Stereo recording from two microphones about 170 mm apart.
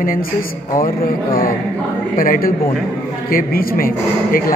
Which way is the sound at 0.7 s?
55° left (ahead or behind).